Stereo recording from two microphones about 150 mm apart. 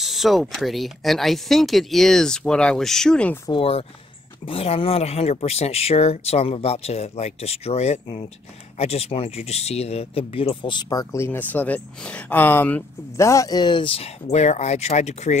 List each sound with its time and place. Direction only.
0.0 s speech: centre (ahead or behind)
3.4 s speech: 35° left (ahead or behind)